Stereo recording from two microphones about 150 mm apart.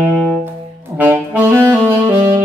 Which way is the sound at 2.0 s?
25° right (ahead or behind).